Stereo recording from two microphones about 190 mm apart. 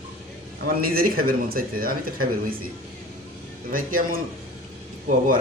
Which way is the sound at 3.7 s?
45° right (ahead or behind).